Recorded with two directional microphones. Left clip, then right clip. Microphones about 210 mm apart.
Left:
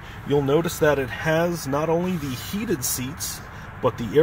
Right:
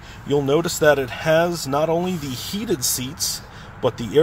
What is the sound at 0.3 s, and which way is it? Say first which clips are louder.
Speech: right 2 dB; 5° right (ahead or behind).